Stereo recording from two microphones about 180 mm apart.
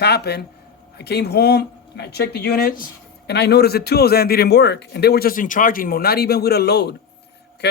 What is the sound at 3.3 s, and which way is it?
A man's voice, 65° left (ahead or behind).